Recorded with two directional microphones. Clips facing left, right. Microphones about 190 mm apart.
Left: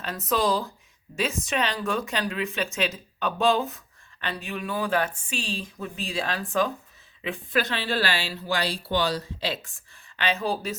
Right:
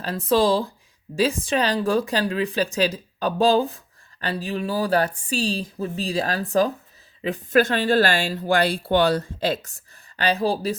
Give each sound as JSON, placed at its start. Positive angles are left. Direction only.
{"t": 0.0, "sound": "speech", "side_deg": -30}